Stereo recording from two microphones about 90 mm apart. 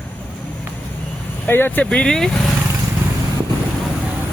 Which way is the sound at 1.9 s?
5° left (ahead or behind).